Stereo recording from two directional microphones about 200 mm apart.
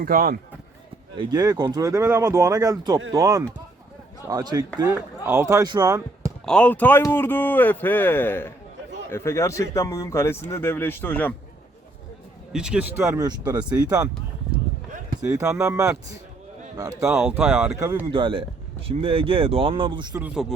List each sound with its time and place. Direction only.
0.0 s speech: 45° right (ahead or behind)
1.1 s speech: 20° right (ahead or behind)
6.4 s speech: 5° left (ahead or behind)
12.5 s speech: 5° right (ahead or behind)
13.1 s speech: 20° right (ahead or behind)
15.3 s speech: 15° right (ahead or behind)
17.1 s speech: 5° right (ahead or behind)
18.1 s speech: 25° right (ahead or behind)
20.1 s speech: 5° right (ahead or behind)